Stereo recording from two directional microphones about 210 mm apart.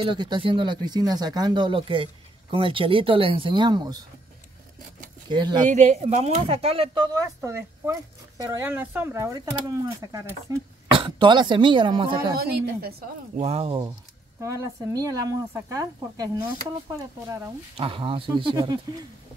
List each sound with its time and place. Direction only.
0.0 s speech: 20° right (ahead or behind)
5.3 s speech: 20° right (ahead or behind)
5.6 s speech: 35° right (ahead or behind)
12.4 s a woman's voice: 50° right (ahead or behind)
13.4 s speech: 30° right (ahead or behind)
14.4 s speech: 15° right (ahead or behind)
17.7 s speech: 25° right (ahead or behind)